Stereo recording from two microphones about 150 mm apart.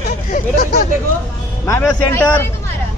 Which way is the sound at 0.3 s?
85° left.